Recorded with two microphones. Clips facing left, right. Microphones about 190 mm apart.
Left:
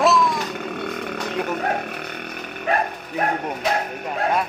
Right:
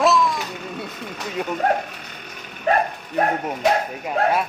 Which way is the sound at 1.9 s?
60° left (ahead or behind).